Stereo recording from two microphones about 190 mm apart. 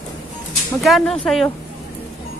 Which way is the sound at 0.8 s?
Centre (ahead or behind).